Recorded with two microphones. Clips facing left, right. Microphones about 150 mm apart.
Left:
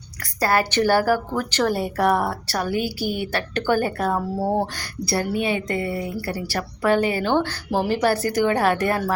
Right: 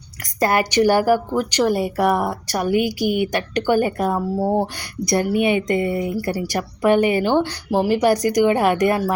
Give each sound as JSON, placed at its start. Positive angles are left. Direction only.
{"t": 0.3, "sound": "a woman's voice", "side_deg": -20}
{"t": 4.4, "sound": "speech", "side_deg": 0}
{"t": 4.6, "sound": "a woman's voice", "side_deg": -15}